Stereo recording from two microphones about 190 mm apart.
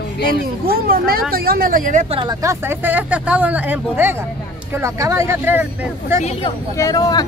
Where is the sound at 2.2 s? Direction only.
20° right (ahead or behind).